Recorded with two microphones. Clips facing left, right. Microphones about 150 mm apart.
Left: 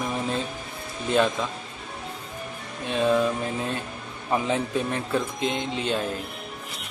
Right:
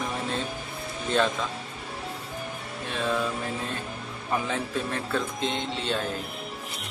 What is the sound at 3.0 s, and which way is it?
Mantra, 20° left (ahead or behind).